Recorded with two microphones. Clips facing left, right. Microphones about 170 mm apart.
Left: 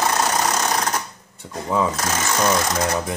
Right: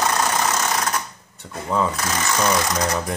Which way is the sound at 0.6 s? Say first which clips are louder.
Left 1 dB; 35° left (ahead or behind).